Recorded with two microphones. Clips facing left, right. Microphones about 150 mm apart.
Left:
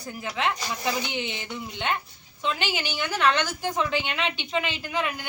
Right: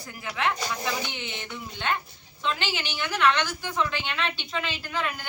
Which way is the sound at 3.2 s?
40° left (ahead or behind).